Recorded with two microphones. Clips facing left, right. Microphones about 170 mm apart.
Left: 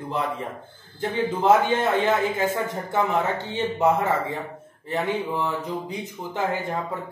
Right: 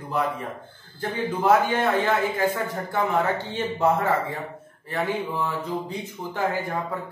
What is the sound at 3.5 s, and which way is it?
A man's voice, 20° left (ahead or behind).